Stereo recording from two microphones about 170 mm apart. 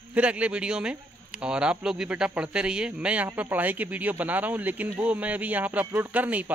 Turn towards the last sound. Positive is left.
turn(degrees=-10)  # may be behind; listen again after turning